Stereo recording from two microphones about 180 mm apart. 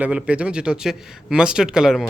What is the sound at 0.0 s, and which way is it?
A man's voice, 5° right (ahead or behind).